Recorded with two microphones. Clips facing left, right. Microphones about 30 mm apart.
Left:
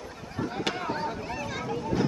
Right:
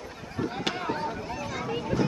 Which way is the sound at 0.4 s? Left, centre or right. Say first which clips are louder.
Even; centre.